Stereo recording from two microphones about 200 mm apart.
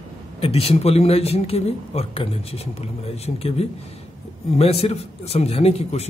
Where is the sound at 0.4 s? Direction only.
30° left (ahead or behind).